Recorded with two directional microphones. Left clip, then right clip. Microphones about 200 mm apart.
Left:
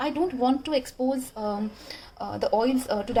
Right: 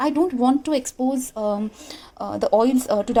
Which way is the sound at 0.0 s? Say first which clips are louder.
Right 5 dB; 40° right (ahead or behind).